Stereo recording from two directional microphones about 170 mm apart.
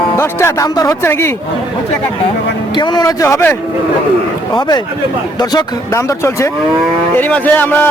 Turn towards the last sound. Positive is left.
turn(degrees=10)  # may be behind; listen again after turning